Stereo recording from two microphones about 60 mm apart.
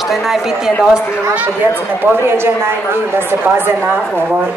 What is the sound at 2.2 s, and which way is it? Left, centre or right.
A woman's voice, right.